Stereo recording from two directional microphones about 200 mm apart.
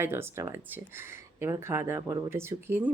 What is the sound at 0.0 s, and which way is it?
A woman's voice, 10° right (ahead or behind).